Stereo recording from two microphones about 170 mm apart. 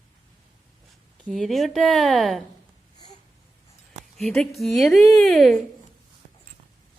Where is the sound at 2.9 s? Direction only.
25° left (ahead or behind).